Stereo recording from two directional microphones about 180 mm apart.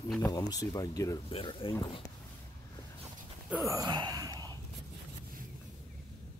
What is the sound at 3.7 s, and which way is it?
Gasp, 20° right (ahead or behind).